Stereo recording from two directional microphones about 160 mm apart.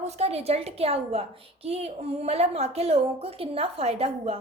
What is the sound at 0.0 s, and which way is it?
A woman's voice, 40° right (ahead or behind).